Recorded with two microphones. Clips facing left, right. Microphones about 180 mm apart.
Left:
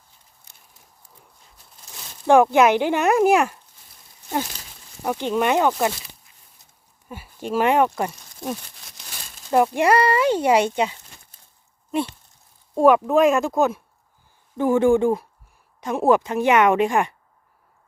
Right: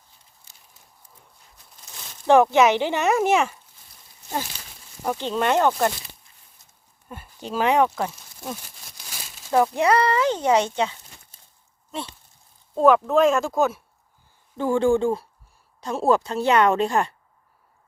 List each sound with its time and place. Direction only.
2.2 s speech: 10° left (ahead or behind)
5.0 s speech: 15° left (ahead or behind)
7.1 s speech: 5° left (ahead or behind)
12.7 s speech: 10° left (ahead or behind)
13.3 s speech: centre (ahead or behind)
14.6 s speech: 15° left (ahead or behind)